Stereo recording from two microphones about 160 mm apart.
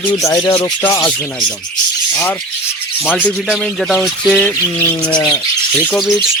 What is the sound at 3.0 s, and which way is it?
Speech, 5° right (ahead or behind).